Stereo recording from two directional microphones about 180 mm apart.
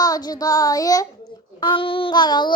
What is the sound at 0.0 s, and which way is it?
A child's voice, 20° left (ahead or behind).